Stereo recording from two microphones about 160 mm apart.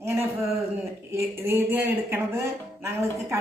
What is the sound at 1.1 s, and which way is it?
A woman's voice, 15° right (ahead or behind).